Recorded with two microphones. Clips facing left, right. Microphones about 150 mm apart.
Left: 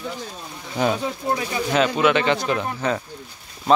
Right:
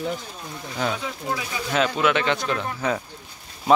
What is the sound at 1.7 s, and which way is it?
Speech, centre (ahead or behind).